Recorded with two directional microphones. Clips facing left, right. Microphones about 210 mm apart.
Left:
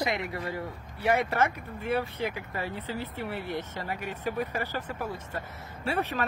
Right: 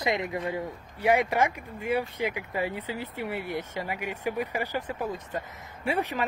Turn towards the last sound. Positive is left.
turn(degrees=-15)  # may be behind; listen again after turning